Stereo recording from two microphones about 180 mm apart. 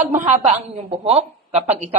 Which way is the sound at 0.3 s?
35° right (ahead or behind).